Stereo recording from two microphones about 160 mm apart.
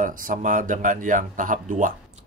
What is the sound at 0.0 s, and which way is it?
Speech, 55° right (ahead or behind).